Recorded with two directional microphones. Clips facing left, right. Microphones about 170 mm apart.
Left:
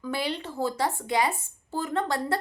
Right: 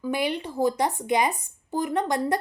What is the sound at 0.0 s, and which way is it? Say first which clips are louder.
Speech: right 4 dB; 15° right (ahead or behind).